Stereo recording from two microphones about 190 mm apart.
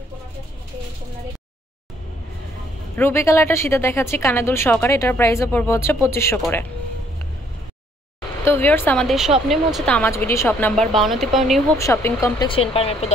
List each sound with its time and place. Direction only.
3.0 s a woman's voice: 15° left (ahead or behind)
8.5 s a woman's voice: 10° left (ahead or behind)
10.8 s speech: centre (ahead or behind)
11.8 s a woman's voice: 15° left (ahead or behind)
12.4 s speech: 30° left (ahead or behind)